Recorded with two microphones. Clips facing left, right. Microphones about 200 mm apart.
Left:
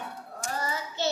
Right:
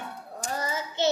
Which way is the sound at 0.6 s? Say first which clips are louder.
Right 6 dB; 20° right (ahead or behind).